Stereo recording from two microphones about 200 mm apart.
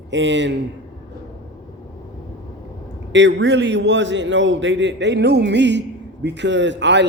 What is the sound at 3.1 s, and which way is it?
Speech, 65° right (ahead or behind).